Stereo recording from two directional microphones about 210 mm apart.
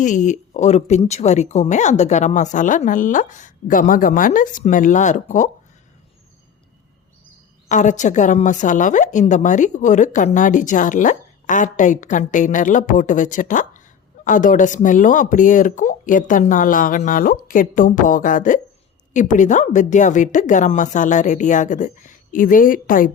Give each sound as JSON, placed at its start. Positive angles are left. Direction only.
{"t": 0.0, "sound": "a woman's voice", "side_deg": 35}
{"t": 7.7, "sound": "a woman's voice", "side_deg": 35}